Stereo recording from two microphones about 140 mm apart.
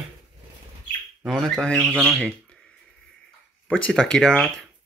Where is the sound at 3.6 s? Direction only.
5° left (ahead or behind).